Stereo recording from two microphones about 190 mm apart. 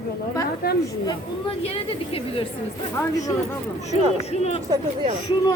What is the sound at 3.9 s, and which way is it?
Speech, 35° left (ahead or behind).